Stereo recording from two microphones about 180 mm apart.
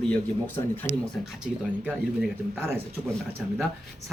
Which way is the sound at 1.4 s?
5° right (ahead or behind).